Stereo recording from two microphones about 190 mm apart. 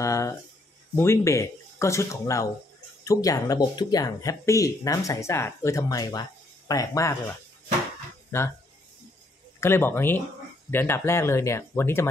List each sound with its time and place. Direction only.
0.0 s speech: 15° left (ahead or behind)
9.6 s speech: 10° left (ahead or behind)